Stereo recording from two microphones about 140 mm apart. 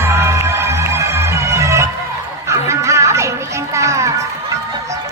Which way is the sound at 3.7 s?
20° right (ahead or behind).